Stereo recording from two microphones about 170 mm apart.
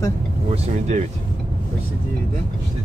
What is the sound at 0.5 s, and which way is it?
Speech, 40° right (ahead or behind).